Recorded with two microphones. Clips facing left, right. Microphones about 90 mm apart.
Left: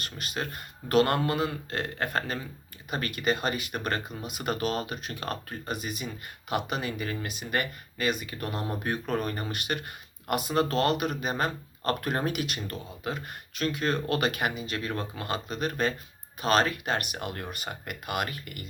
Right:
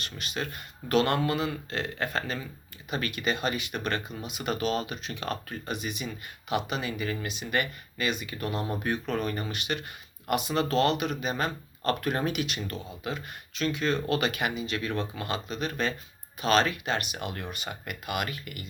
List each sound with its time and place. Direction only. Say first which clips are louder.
0.0 s speech: even; 45° left (ahead or behind)